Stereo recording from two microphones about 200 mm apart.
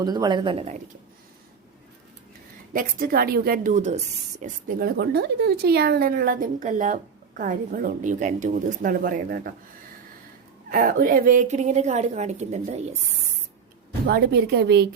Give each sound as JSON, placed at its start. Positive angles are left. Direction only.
{"t": 0.0, "sound": "a woman's voice", "side_deg": -20}
{"t": 2.7, "sound": "speech", "side_deg": -45}
{"t": 10.7, "sound": "a woman's voice", "side_deg": -45}
{"t": 14.1, "sound": "a woman's voice", "side_deg": -55}